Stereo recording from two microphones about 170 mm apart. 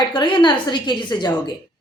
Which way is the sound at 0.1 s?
25° left (ahead or behind).